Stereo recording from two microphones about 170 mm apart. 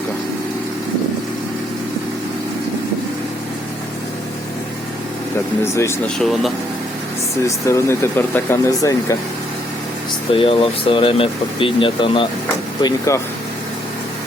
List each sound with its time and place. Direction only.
5.7 s speech: 15° left (ahead or behind)
6.1 s speech: centre (ahead or behind)
7.4 s speech: 15° left (ahead or behind)
10.3 s speech: 30° left (ahead or behind)
12.8 s speech: 20° left (ahead or behind)